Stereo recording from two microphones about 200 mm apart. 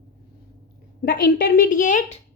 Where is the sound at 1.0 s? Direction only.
50° left (ahead or behind).